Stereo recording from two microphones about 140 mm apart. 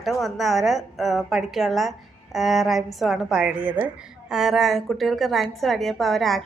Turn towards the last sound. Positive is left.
turn(degrees=0)  # may be behind; listen again after turning